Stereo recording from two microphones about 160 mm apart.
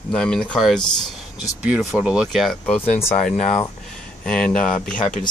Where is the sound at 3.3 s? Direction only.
45° left (ahead or behind).